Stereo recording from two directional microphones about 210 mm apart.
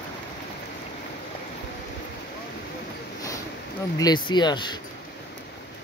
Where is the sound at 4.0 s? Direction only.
20° left (ahead or behind).